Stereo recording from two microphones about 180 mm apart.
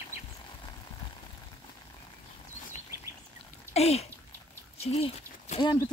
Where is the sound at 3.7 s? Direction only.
35° left (ahead or behind).